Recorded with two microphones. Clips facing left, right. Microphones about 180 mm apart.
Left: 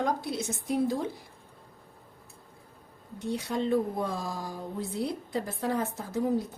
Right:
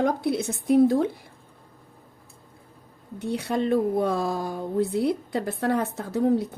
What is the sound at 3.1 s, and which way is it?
Speech, 65° right (ahead or behind).